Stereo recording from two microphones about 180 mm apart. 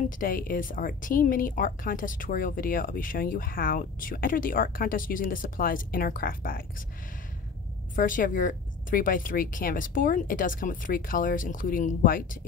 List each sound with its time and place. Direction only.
0.2 s speech: 50° left (ahead or behind)
7.9 s speech: 50° left (ahead or behind)